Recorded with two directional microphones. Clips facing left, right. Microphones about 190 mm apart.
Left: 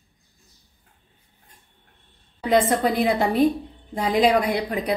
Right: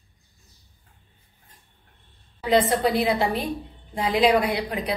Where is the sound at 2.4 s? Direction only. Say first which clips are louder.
Left 1 dB; 50° left (ahead or behind).